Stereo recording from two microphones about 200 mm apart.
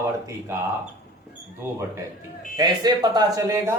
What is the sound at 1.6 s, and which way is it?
Speech, 10° right (ahead or behind).